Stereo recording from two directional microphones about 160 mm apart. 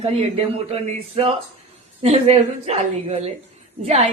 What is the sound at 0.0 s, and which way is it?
A woman's voice, 40° right (ahead or behind).